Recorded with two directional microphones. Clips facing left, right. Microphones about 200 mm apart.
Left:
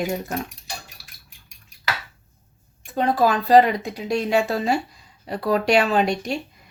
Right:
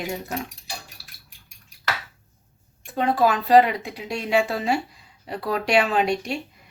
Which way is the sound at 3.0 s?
40° left (ahead or behind).